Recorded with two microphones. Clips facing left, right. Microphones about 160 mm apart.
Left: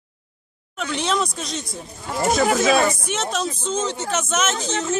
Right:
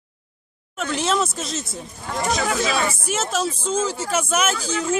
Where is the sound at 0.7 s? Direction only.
5° right (ahead or behind).